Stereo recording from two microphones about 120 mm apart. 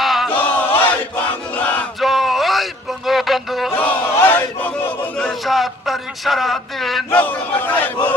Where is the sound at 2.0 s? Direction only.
Centre (ahead or behind).